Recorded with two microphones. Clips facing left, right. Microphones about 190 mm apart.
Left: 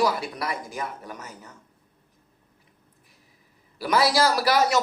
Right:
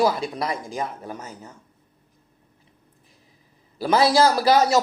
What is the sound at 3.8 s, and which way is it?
Speech, 25° right (ahead or behind).